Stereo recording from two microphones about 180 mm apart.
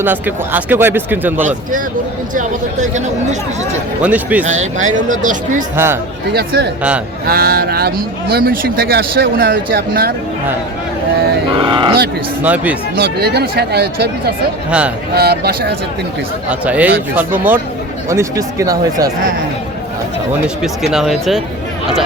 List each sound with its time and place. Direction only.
0.0 s speech: 10° right (ahead or behind)
2.3 s speech: 45° right (ahead or behind)
4.0 s speech: 10° right (ahead or behind)
4.4 s speech: 40° right (ahead or behind)
5.7 s speech: 15° right (ahead or behind)
6.3 s speech: 60° right (ahead or behind)
11.5 s speech: 25° right (ahead or behind)
12.4 s speech: 10° right (ahead or behind)
13.0 s speech: 60° right (ahead or behind)
14.7 s speech: 5° right (ahead or behind)
15.1 s speech: 60° right (ahead or behind)
16.5 s speech: 10° right (ahead or behind)
20.6 s speech: centre (ahead or behind)